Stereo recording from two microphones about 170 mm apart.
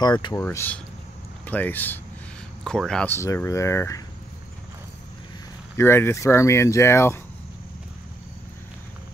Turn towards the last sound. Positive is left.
turn(degrees=15)  # may be behind; listen again after turning